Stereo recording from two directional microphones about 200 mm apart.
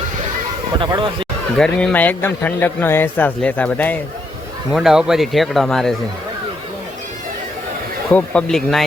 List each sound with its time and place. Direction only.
0.8 s speech: 25° right (ahead or behind)
1.5 s a man's voice: 5° left (ahead or behind)
4.7 s speech: centre (ahead or behind)
8.1 s speech: 5° left (ahead or behind)